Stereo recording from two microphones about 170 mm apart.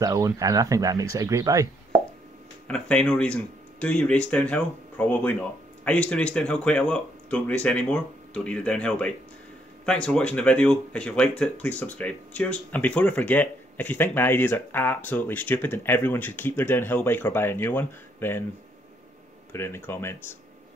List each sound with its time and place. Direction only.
0.0 s speech: 20° right (ahead or behind)
2.7 s speech: 5° left (ahead or behind)
19.5 s speech: 15° left (ahead or behind)